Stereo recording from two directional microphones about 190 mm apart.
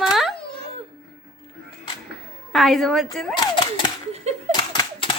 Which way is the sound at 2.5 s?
Centre (ahead or behind).